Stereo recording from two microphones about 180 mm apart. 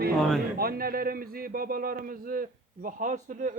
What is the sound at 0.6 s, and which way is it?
A man's voice, 55° right (ahead or behind).